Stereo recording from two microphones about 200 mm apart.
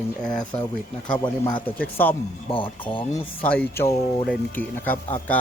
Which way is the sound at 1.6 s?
10° left (ahead or behind).